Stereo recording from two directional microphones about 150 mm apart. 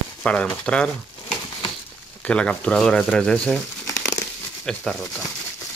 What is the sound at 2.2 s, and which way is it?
Speech, 5° left (ahead or behind).